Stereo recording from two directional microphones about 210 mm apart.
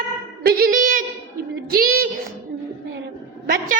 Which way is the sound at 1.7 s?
45° right (ahead or behind).